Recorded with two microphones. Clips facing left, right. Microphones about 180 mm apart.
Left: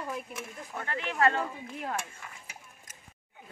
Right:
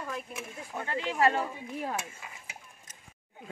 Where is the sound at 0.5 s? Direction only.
15° right (ahead or behind).